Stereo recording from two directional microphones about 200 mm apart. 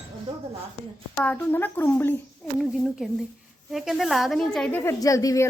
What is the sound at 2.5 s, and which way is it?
A woman's voice, centre (ahead or behind).